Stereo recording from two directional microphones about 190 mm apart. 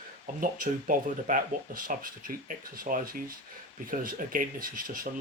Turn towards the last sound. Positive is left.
turn(degrees=-50)  # may be behind; listen again after turning